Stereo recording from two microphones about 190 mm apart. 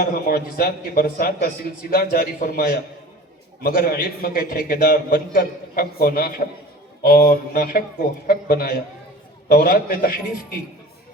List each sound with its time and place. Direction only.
0.0 s a man's voice: 50° left (ahead or behind)